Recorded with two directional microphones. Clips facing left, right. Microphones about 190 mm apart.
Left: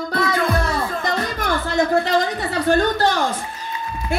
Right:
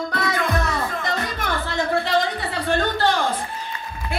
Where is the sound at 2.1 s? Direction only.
40° left (ahead or behind).